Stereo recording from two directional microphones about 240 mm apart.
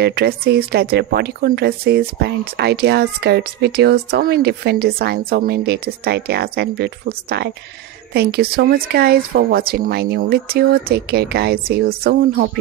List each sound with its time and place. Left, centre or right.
0.0 s speech: right